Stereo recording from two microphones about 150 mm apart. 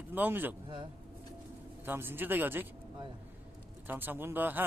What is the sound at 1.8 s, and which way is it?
Speech, 15° right (ahead or behind).